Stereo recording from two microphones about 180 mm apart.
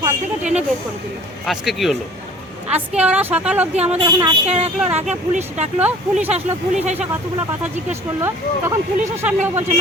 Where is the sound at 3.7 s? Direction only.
35° right (ahead or behind).